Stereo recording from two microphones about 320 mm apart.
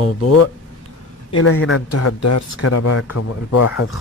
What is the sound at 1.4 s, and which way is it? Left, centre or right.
Speech, left.